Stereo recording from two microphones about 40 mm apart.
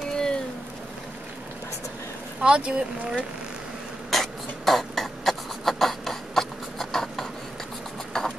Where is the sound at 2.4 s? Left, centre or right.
Right.